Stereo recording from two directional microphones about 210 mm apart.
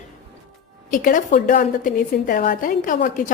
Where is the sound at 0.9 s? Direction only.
40° left (ahead or behind).